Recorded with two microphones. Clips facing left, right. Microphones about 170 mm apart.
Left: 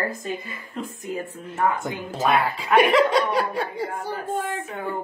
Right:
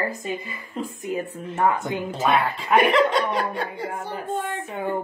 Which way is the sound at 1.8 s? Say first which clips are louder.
Right 1 dB; 5° left (ahead or behind).